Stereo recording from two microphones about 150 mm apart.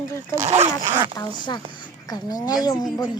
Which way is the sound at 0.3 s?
45° right (ahead or behind).